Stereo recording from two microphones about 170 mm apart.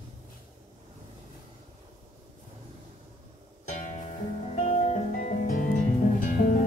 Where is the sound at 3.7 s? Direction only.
45° left (ahead or behind).